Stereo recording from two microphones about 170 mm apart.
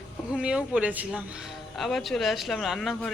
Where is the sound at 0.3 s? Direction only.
5° right (ahead or behind).